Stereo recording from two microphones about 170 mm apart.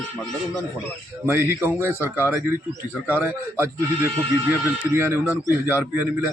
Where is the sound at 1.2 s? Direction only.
15° right (ahead or behind).